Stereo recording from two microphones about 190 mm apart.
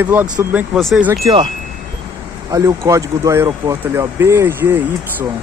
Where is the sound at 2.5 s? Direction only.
15° right (ahead or behind).